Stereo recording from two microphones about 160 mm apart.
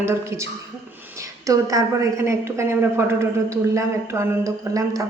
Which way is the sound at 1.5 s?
20° right (ahead or behind).